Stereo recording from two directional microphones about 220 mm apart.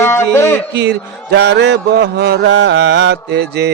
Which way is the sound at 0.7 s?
50° right (ahead or behind).